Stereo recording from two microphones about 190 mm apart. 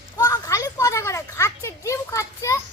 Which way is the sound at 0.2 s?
20° left (ahead or behind).